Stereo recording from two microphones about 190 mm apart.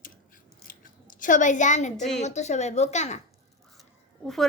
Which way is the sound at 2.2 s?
35° left (ahead or behind).